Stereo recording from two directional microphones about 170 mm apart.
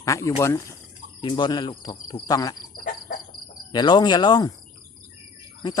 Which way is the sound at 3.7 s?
25° left (ahead or behind).